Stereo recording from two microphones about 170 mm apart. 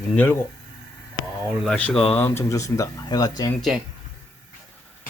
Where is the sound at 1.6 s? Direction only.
5° left (ahead or behind); by 3.5 s 25° left (ahead or behind).